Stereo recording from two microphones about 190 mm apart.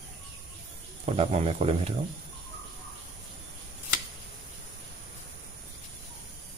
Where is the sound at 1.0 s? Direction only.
30° right (ahead or behind).